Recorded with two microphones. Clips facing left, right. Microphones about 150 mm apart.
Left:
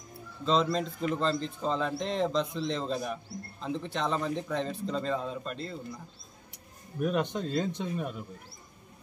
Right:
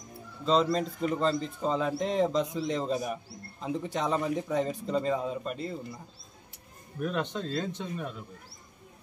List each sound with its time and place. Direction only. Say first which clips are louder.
0.5 s speech: right 2 dB; centre (ahead or behind)
7.0 s a man's voice: left 2 dB; 15° left (ahead or behind)